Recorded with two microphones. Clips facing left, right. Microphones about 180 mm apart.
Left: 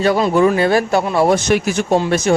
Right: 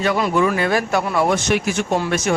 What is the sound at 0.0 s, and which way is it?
Speech, 30° left (ahead or behind).